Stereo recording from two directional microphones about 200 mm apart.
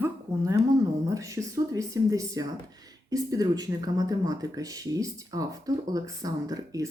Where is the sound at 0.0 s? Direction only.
15° right (ahead or behind).